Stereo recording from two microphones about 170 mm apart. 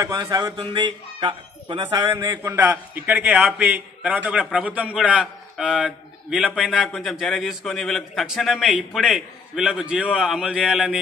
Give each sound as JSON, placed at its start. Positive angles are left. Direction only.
{"t": 0.0, "sound": "a man's voice", "side_deg": -25}